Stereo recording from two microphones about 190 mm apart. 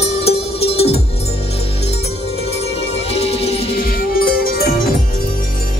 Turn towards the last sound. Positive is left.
turn(degrees=50)  # may be behind; listen again after turning